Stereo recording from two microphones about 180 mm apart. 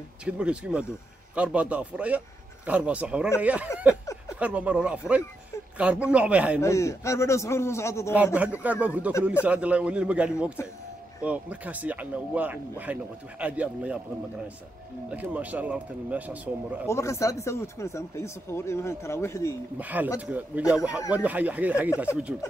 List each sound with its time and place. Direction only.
0.2 s speech: 5° right (ahead or behind)
3.9 s a sound: 15° left (ahead or behind)
4.4 s speech: 5° right (ahead or behind)
6.6 s speech: 15° left (ahead or behind)
8.4 s speech: 10° right (ahead or behind)
15.0 s speech: 10° right (ahead or behind)
16.8 s speech: 15° left (ahead or behind)
19.8 s speech: 10° right (ahead or behind)